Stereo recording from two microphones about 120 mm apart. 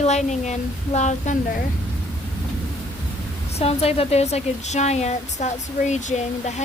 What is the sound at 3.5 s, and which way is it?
Speech, 60° left (ahead or behind).